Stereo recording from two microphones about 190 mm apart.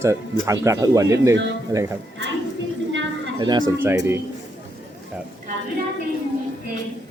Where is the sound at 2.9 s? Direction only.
75° right (ahead or behind).